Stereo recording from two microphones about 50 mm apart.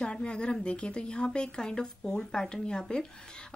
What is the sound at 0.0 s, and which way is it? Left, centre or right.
Speech, centre.